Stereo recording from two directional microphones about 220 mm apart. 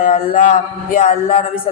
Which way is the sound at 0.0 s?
35° left (ahead or behind).